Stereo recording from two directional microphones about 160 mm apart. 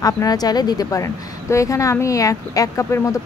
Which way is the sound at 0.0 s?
25° left (ahead or behind).